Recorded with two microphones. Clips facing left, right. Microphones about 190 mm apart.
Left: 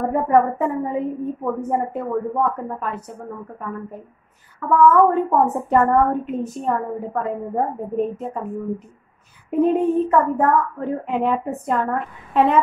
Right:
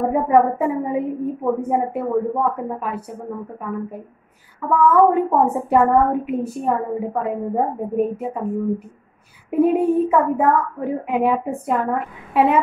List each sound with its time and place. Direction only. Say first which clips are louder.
0.1 s a woman's voice: even; 10° right (ahead or behind)
4.7 s a woman's voice: even; 10° right (ahead or behind)